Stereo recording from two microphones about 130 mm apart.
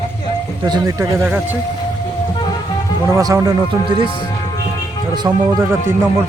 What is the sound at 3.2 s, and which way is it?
Speech, 30° right (ahead or behind).